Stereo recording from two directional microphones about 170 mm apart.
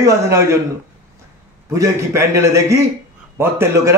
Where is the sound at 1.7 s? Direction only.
15° right (ahead or behind).